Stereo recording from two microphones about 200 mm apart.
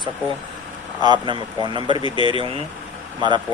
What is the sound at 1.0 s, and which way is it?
Speech, 20° right (ahead or behind).